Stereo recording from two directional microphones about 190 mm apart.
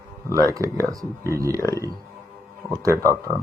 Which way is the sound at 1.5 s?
15° left (ahead or behind).